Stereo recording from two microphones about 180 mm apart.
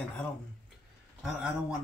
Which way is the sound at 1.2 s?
5° right (ahead or behind).